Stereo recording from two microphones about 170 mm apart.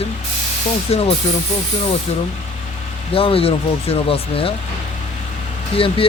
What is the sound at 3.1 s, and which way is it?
Speech, 35° left (ahead or behind).